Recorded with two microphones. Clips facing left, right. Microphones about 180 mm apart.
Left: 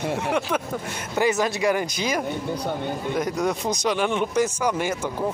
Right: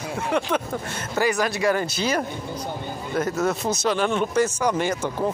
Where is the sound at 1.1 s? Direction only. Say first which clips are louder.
Left 1 dB; 20° left (ahead or behind).